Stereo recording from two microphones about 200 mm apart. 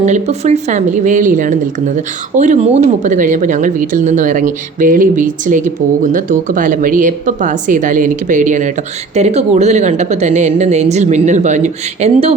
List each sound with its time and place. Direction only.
0.0 s speech: 35° right (ahead or behind)